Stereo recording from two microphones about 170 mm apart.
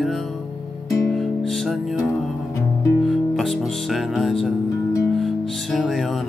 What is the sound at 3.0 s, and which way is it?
Music, centre (ahead or behind).